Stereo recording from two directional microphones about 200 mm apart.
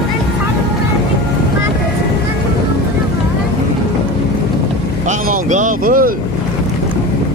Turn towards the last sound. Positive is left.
turn(degrees=-45)  # may be behind; listen again after turning